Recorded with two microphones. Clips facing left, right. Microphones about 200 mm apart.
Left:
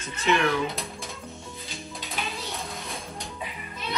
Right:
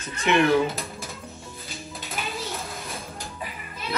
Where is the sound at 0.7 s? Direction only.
Centre (ahead or behind).